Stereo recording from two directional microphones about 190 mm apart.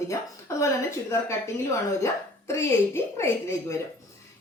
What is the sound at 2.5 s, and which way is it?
Speech, 15° left (ahead or behind).